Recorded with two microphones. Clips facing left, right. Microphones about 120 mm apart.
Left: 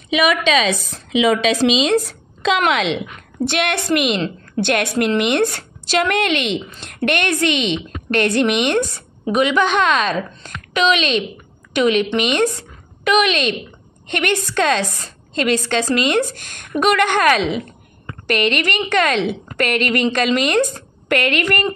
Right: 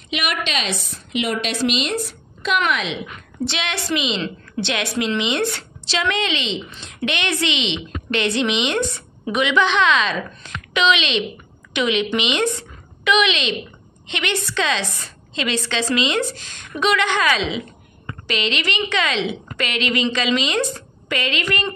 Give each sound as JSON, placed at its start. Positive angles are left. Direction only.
{"t": 0.9, "sound": "a woman's voice", "side_deg": 90}
{"t": 3.4, "sound": "a woman's voice", "side_deg": 55}